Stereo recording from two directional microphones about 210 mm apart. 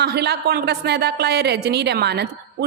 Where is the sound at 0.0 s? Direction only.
50° right (ahead or behind).